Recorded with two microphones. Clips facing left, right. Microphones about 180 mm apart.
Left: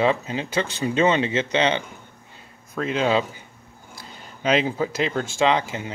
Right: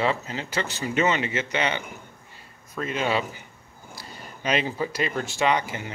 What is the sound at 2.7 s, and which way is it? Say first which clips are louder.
Speech: left 4 dB; 90° left.